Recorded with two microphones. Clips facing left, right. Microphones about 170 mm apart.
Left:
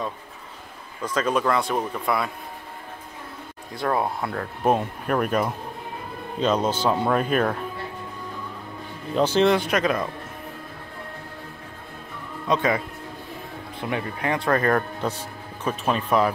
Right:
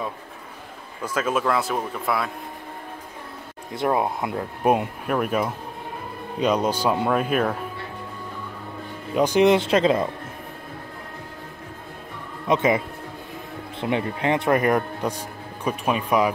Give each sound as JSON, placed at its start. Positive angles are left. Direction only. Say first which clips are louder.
{"t": 1.0, "sound": "a man's voice", "louder": "left 1 dB", "side_deg": -5}
{"t": 3.7, "sound": "speech", "louder": "right 2 dB", "side_deg": -20}
{"t": 5.0, "sound": "a man's voice", "louder": "even", "side_deg": -5}
{"t": 9.1, "sound": "speech", "louder": "right 2 dB", "side_deg": -15}
{"t": 12.4, "sound": "speech", "louder": "right 2 dB", "side_deg": -20}